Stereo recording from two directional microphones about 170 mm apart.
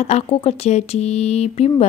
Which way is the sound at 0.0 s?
40° left (ahead or behind).